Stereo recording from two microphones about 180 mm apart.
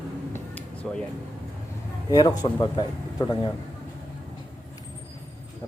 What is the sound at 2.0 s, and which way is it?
A man's voice, 20° left (ahead or behind).